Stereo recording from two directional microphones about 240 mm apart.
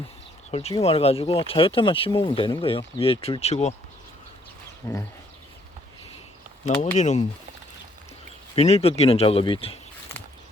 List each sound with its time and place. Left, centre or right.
0.5 s speech: left
4.8 s speech: centre
6.7 s speech: left
8.5 s speech: left